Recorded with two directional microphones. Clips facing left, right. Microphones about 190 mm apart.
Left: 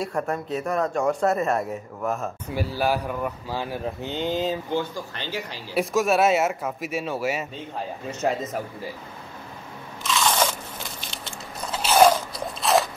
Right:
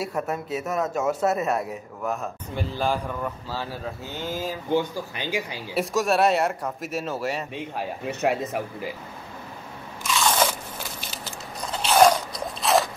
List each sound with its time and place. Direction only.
0.0 s speech: 5° right (ahead or behind); by 4.6 s 20° left (ahead or behind)
4.7 s speech: 10° right (ahead or behind)
5.8 s speech: centre (ahead or behind)
7.5 s speech: 70° right (ahead or behind)
10.1 s crunch: 10° right (ahead or behind)
11.8 s biting: 5° left (ahead or behind)